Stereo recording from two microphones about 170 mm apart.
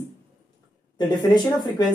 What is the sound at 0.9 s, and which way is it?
Speech, 25° left (ahead or behind).